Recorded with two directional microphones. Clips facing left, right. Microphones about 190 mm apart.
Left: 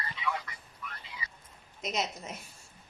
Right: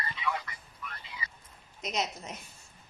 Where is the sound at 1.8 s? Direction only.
Centre (ahead or behind).